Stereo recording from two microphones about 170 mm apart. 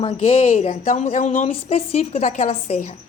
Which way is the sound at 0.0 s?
35° left (ahead or behind).